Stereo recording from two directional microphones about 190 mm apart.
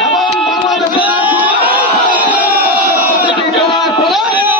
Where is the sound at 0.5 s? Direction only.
5° right (ahead or behind).